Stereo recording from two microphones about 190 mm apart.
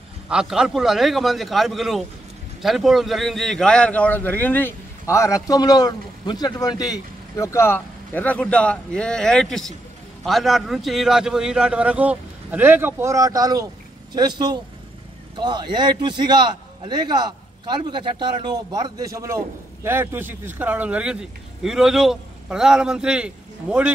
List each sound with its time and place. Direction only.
0.3 s a man's voice: 5° right (ahead or behind)